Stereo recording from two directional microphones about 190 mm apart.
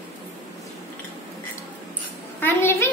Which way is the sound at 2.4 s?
15° left (ahead or behind).